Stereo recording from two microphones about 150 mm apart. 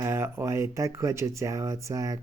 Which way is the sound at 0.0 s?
15° right (ahead or behind).